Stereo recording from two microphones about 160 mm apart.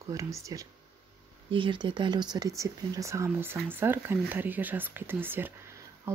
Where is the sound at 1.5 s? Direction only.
30° right (ahead or behind).